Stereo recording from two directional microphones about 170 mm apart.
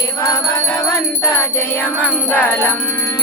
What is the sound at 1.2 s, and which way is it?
Music, 15° left (ahead or behind).